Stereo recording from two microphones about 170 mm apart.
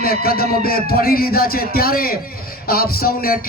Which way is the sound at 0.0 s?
60° left (ahead or behind).